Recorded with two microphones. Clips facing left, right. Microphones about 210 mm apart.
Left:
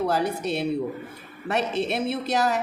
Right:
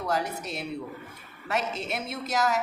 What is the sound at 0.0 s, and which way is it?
A woman's voice, 30° left (ahead or behind).